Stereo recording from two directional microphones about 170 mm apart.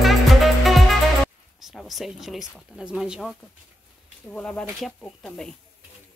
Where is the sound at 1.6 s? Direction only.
Centre (ahead or behind).